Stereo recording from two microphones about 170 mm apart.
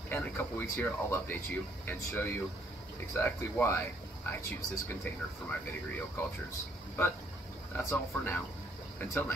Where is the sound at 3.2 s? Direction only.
15° left (ahead or behind).